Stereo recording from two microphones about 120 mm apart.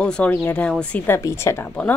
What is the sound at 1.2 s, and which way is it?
Speech, 25° left (ahead or behind).